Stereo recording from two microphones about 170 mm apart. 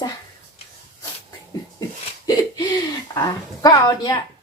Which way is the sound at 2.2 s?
20° left (ahead or behind).